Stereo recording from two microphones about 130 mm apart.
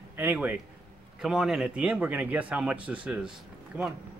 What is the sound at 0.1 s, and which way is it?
Speech, 15° right (ahead or behind).